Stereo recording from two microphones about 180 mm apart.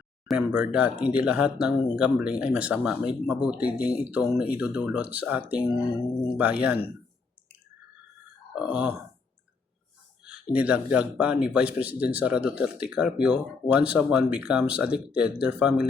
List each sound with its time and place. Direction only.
0.3 s speech: 5° right (ahead or behind)
8.5 s speech: 5° right (ahead or behind)
10.5 s speech: 5° right (ahead or behind)